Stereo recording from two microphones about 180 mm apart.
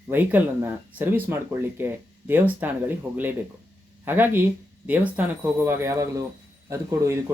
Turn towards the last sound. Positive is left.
turn(degrees=-15)  # may be behind; listen again after turning